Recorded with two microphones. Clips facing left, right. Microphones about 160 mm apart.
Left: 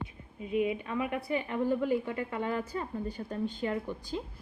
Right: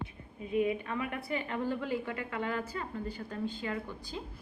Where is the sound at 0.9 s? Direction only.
20° left (ahead or behind).